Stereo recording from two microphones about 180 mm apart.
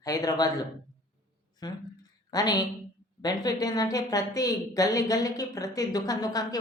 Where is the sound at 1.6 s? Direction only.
25° left (ahead or behind).